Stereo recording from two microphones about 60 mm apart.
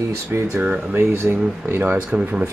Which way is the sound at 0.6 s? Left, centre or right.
Right.